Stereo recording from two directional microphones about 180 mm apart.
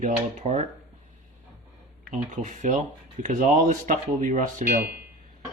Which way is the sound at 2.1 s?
45° right (ahead or behind).